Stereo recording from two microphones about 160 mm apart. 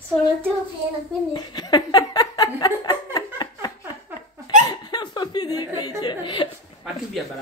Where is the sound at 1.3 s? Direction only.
25° left (ahead or behind).